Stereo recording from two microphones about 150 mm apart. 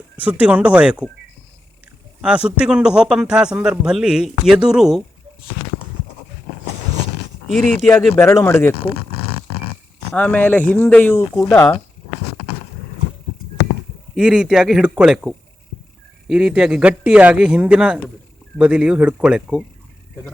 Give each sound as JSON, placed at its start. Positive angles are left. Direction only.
{"t": 0.2, "sound": "a man's voice", "side_deg": -10}
{"t": 2.2, "sound": "a man's voice", "side_deg": -5}
{"t": 7.4, "sound": "speech", "side_deg": 5}
{"t": 8.1, "sound": "a man's voice", "side_deg": 15}
{"t": 10.2, "sound": "a man's voice", "side_deg": 10}
{"t": 14.2, "sound": "a man's voice", "side_deg": -5}